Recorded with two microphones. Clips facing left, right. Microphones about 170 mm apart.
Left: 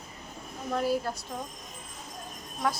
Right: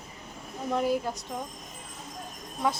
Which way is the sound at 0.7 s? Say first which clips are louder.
Right 1 dB; 15° right (ahead or behind).